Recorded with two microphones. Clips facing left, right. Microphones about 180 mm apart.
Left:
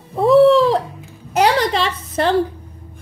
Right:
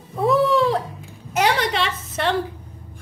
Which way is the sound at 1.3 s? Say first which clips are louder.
Left 5 dB; 35° left (ahead or behind).